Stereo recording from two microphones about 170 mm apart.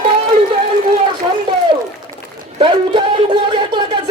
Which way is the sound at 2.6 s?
30° right (ahead or behind).